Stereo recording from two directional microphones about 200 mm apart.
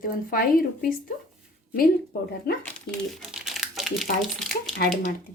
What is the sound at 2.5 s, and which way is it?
Speech, 50° left (ahead or behind).